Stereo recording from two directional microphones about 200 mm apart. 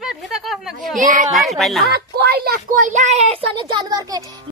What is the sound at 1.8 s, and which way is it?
A child's voice, 55° right (ahead or behind).